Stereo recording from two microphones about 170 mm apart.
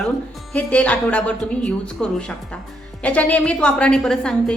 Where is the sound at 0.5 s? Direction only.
10° left (ahead or behind).